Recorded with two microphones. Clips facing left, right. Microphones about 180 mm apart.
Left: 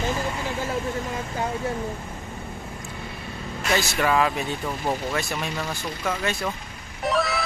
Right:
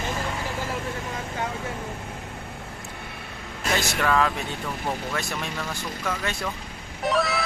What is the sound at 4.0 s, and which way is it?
Speech, 10° left (ahead or behind).